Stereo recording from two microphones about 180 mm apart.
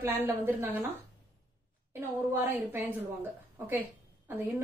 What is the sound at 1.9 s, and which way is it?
A woman's voice, 10° right (ahead or behind).